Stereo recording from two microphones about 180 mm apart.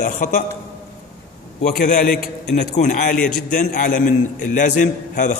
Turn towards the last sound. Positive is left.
turn(degrees=45)  # may be behind; listen again after turning